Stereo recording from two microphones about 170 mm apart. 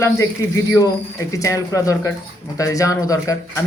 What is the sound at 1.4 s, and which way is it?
A man's voice, 20° left (ahead or behind).